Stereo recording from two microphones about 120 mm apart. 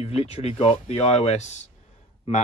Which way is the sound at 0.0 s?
60° left (ahead or behind).